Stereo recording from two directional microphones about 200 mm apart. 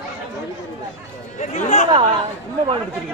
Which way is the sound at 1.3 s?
35° left (ahead or behind).